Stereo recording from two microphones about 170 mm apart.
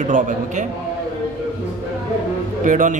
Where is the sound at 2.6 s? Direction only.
50° right (ahead or behind).